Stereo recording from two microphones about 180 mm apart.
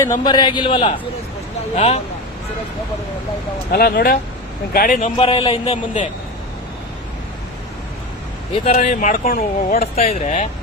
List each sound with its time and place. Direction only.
0.0 s a man's voice: 20° left (ahead or behind)
3.7 s speech: 60° left (ahead or behind)
5.1 s a man's voice: 30° left (ahead or behind)
8.7 s speech: 45° left (ahead or behind)
9.8 s speech: 35° left (ahead or behind)